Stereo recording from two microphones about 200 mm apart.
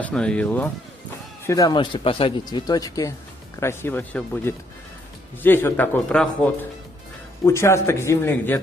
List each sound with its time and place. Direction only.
0.0 s speech: 5° left (ahead or behind)